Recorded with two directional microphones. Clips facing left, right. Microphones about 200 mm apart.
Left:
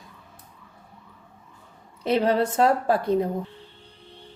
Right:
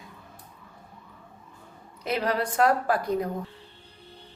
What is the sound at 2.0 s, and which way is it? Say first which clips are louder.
A woman's voice: left 6 dB; 30° left (ahead or behind).